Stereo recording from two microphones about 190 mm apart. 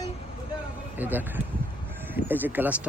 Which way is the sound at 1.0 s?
10° right (ahead or behind).